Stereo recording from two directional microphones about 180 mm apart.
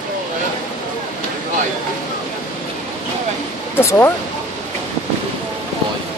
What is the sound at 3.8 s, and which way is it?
Speech, 15° left (ahead or behind).